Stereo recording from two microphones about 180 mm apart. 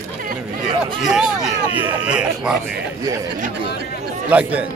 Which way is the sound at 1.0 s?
5° right (ahead or behind).